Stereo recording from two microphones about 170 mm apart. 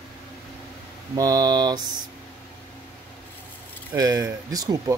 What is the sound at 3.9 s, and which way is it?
Speech, 20° right (ahead or behind).